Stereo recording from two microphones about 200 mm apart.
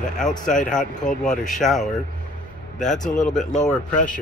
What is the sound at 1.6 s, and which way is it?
Speech, centre (ahead or behind).